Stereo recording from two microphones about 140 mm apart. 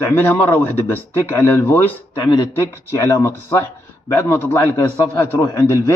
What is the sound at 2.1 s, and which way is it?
Speech, 30° left (ahead or behind).